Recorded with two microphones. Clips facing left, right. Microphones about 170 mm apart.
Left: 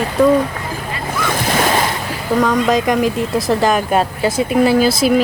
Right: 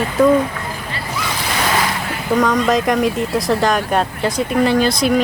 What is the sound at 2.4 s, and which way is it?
Speech, centre (ahead or behind).